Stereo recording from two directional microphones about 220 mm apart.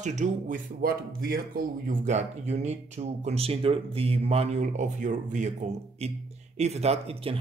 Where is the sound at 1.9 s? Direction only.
30° right (ahead or behind).